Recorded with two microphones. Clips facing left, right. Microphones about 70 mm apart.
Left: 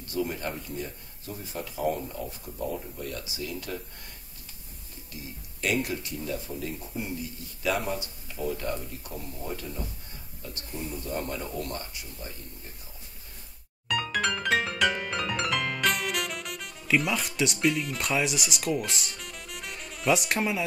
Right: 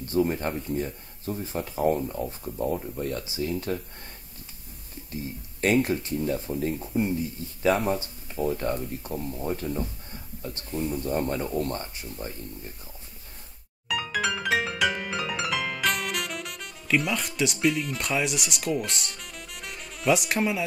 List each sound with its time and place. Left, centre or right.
0.0 s speech: right
5.1 s speech: right
13.8 s music: centre